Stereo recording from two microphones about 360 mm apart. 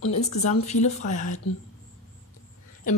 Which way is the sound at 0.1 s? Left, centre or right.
Centre.